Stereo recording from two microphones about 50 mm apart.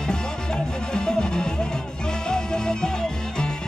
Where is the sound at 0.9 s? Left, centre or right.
Centre.